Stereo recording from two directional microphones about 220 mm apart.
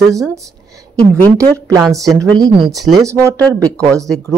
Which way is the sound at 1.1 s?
15° right (ahead or behind).